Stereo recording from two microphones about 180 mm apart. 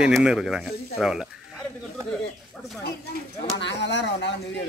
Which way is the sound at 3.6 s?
75° left (ahead or behind).